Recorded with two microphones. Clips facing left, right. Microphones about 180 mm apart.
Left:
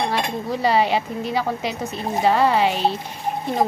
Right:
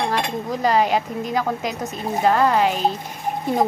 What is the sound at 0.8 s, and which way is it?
Speech, 45° right (ahead or behind).